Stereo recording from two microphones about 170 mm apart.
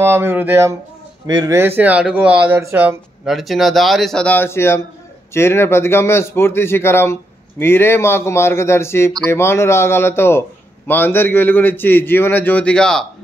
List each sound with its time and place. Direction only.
0.0 s speech: 15° right (ahead or behind)
1.8 s speech: 5° right (ahead or behind)
3.3 s a man's voice: centre (ahead or behind)